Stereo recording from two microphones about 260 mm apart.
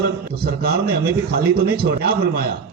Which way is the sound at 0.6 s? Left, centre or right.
Right.